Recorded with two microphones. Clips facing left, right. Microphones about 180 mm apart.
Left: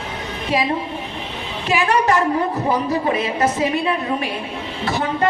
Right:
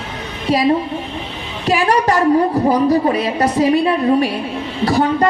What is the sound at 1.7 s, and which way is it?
A woman's voice, 35° right (ahead or behind).